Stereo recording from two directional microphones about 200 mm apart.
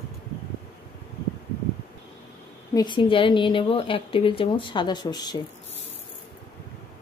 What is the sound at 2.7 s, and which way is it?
Speech, 25° left (ahead or behind).